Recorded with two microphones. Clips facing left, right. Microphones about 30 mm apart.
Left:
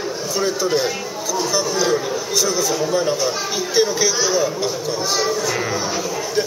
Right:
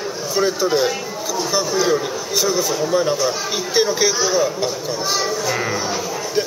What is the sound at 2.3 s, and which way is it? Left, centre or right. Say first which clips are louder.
Speech: right 1 dB; centre.